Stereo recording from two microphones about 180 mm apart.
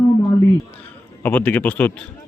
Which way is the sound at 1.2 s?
10° left (ahead or behind).